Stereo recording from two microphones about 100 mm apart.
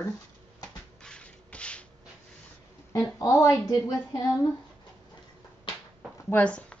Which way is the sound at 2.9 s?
30° left (ahead or behind).